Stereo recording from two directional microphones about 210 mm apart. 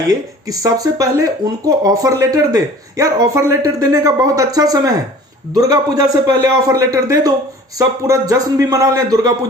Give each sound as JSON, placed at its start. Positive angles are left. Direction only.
{"t": 0.4, "sound": "speech", "side_deg": -15}